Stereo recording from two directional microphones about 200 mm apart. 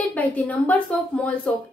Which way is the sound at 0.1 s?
10° left (ahead or behind).